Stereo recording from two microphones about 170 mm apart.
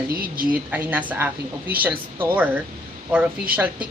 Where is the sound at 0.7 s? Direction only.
10° right (ahead or behind).